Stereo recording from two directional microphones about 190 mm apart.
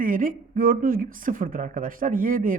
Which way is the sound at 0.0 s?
45° right (ahead or behind).